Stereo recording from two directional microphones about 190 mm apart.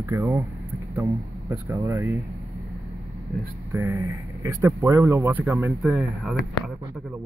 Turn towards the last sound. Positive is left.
turn(degrees=-5)  # may be behind; listen again after turning